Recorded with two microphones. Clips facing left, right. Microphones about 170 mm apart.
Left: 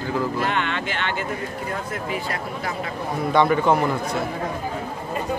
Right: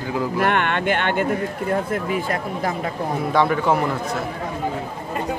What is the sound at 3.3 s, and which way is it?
Speech, centre (ahead or behind).